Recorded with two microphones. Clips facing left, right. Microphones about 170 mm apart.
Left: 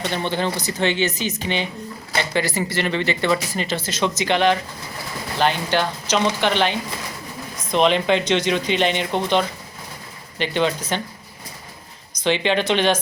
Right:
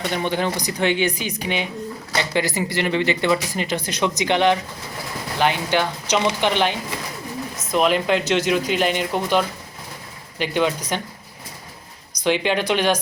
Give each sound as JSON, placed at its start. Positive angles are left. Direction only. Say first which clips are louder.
{"t": 0.1, "sound": "speech", "louder": "right 2 dB", "side_deg": -10}
{"t": 12.2, "sound": "speech", "louder": "even", "side_deg": -10}